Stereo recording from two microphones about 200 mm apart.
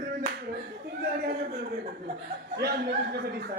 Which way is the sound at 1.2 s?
50° right (ahead or behind).